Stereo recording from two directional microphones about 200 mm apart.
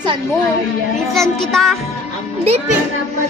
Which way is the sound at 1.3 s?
Centre (ahead or behind).